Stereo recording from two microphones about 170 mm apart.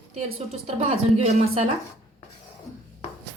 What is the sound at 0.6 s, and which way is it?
A woman's voice, 35° right (ahead or behind).